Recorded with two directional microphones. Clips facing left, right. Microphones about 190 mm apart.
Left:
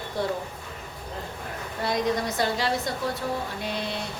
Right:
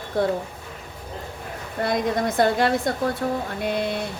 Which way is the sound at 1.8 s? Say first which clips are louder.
Right 3 dB; 55° right (ahead or behind).